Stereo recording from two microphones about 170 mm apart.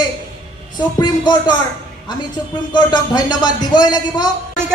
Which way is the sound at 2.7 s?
25° left (ahead or behind).